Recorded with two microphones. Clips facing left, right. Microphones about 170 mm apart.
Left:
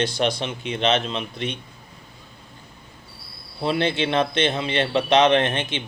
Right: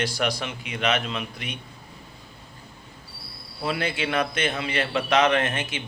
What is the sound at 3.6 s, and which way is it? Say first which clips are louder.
A man's voice: left 5 dB; 25° left (ahead or behind).